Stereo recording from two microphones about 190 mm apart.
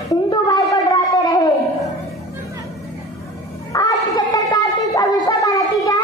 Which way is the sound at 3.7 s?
20° left (ahead or behind).